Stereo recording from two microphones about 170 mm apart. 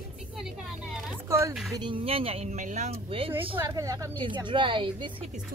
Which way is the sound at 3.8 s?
20° right (ahead or behind).